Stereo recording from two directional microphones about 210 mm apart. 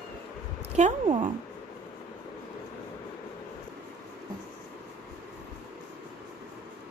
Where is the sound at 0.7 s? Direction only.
30° right (ahead or behind).